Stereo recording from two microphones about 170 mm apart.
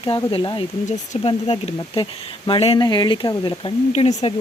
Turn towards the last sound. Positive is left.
turn(degrees=40)  # may be behind; listen again after turning